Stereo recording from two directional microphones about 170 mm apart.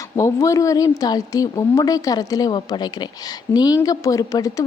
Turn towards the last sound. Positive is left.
turn(degrees=20)  # may be behind; listen again after turning